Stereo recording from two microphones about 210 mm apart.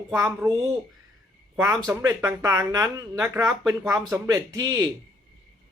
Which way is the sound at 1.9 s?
15° right (ahead or behind).